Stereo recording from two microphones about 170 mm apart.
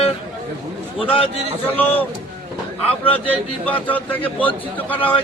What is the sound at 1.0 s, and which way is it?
Speech, 35° left (ahead or behind).